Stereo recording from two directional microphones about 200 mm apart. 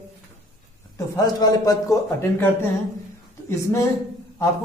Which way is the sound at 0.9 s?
20° left (ahead or behind).